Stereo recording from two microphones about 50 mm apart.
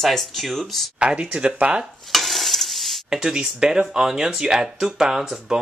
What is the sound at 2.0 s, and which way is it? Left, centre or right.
Stir, centre.